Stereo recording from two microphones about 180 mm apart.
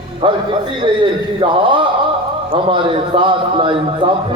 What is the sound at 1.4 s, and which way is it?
Speech, 30° right (ahead or behind).